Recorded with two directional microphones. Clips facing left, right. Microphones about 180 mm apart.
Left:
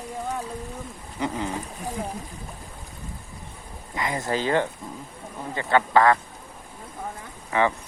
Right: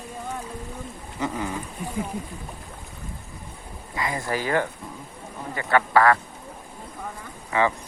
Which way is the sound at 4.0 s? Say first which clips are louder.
Left 1 dB; 20° left (ahead or behind).